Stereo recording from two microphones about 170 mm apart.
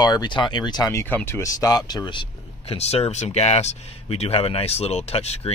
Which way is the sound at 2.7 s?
40° left (ahead or behind).